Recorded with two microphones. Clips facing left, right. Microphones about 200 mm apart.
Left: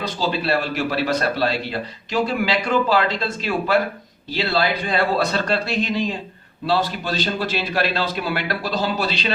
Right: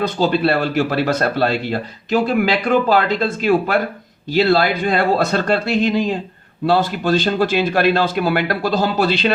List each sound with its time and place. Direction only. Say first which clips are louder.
0.0 s a man's voice: right 7 dB; 55° right (ahead or behind)